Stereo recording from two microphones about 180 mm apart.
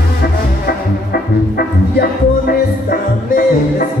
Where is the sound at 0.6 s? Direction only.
55° left (ahead or behind).